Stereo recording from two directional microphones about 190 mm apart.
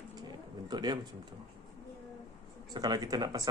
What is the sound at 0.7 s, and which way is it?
Speech, 20° right (ahead or behind).